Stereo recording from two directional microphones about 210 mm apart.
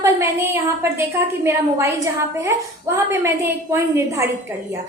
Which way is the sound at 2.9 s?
10° right (ahead or behind).